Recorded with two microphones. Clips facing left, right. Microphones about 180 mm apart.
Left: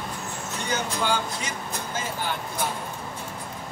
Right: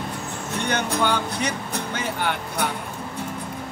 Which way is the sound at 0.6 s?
65° right (ahead or behind).